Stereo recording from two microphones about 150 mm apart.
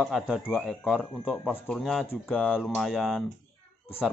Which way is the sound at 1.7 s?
Centre (ahead or behind).